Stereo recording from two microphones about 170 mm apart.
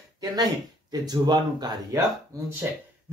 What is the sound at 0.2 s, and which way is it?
Speech, 20° right (ahead or behind).